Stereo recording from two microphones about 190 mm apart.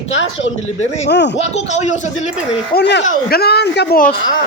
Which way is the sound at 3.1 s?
55° left (ahead or behind).